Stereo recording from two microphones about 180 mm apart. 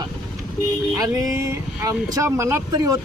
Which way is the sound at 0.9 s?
20° right (ahead or behind).